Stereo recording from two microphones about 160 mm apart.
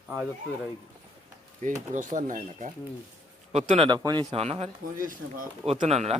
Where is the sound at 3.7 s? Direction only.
35° right (ahead or behind).